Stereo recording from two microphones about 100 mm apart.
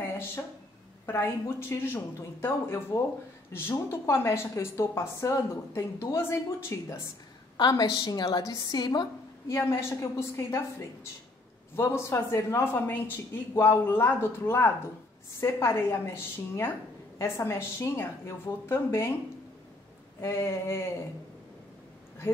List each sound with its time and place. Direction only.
1.2 s speech: 20° left (ahead or behind)
7.5 s a woman's voice: 45° left (ahead or behind)
9.5 s speech: 25° left (ahead or behind)
11.7 s speech: 25° left (ahead or behind)
20.2 s speech: 25° left (ahead or behind)